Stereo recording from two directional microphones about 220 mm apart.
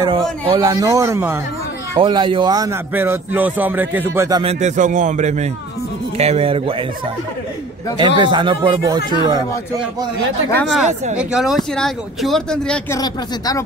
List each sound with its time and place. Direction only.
0.5 s a man's voice: 15° right (ahead or behind)
2.0 s a man's voice: 20° right (ahead or behind)
4.4 s a man's voice: 30° right (ahead or behind)
8.0 s speech: 20° right (ahead or behind)
10.5 s speech: centre (ahead or behind)